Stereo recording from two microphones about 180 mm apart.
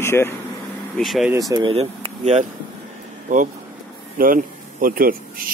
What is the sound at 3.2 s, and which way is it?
Speech, 45° right (ahead or behind).